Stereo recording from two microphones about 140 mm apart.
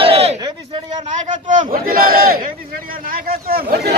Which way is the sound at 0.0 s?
45° right (ahead or behind).